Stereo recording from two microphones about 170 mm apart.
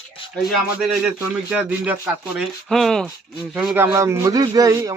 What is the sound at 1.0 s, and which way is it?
Speech, 10° right (ahead or behind).